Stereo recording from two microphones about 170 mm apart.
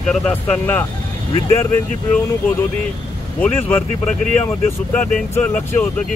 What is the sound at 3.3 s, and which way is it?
Speech, 10° left (ahead or behind).